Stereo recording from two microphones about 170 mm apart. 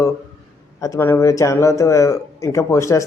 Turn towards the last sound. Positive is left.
turn(degrees=20)  # may be behind; listen again after turning